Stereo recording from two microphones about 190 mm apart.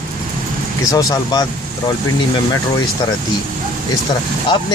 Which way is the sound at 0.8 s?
15° left (ahead or behind).